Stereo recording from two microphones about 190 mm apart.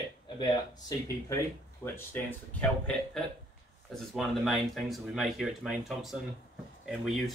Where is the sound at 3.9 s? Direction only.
Centre (ahead or behind).